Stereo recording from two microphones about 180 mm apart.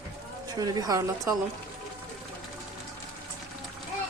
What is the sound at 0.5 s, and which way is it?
Speech, 20° right (ahead or behind).